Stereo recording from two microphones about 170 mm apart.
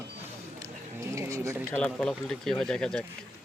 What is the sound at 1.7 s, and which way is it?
Speech, 5° left (ahead or behind).